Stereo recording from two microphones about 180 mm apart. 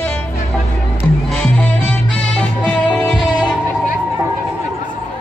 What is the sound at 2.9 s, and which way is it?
Music, 5° left (ahead or behind).